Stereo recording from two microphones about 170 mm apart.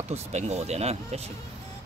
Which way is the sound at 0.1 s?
40° right (ahead or behind).